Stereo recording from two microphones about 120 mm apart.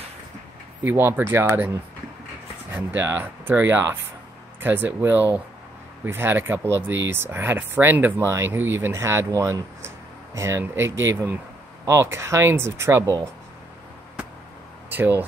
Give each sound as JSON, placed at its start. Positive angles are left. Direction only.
{"t": 0.8, "sound": "speech", "side_deg": -15}
{"t": 2.7, "sound": "speech", "side_deg": -20}
{"t": 14.9, "sound": "speech", "side_deg": -15}